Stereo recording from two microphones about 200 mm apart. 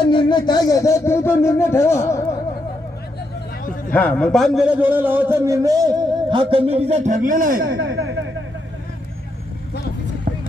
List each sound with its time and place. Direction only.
0.0 s speech: 25° left (ahead or behind)
3.9 s a man's voice: 5° left (ahead or behind); by 7.7 s 45° right (ahead or behind)
7.7 s a sound: 65° right (ahead or behind)